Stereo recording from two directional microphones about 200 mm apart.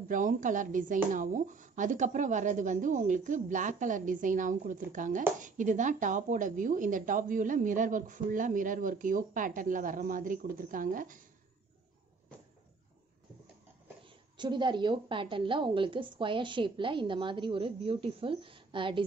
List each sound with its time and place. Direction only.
0.1 s a woman's voice: 40° right (ahead or behind)
14.0 s a woman's voice: 25° right (ahead or behind)